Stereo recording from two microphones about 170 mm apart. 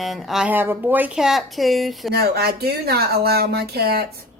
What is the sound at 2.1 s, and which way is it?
Speech, 65° right (ahead or behind).